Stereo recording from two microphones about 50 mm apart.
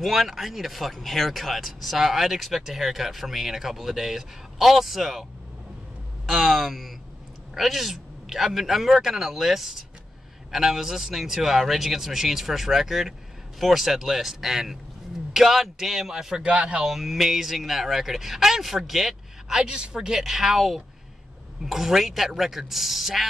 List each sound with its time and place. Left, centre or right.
0.0 s speech: centre
6.2 s speech: centre
16.4 s speech: right
16.8 s speech: centre
19.6 s speech: centre